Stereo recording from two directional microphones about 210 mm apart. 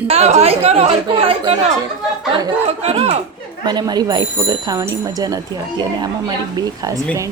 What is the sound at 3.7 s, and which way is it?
Speech, 20° right (ahead or behind).